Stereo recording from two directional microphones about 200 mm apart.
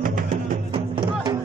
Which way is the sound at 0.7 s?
20° right (ahead or behind).